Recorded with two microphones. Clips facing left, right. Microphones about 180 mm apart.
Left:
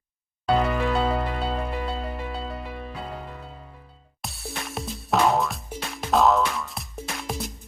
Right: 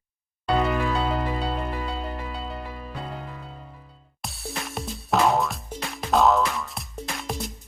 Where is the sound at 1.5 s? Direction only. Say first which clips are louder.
Left 1 dB; 5° left (ahead or behind).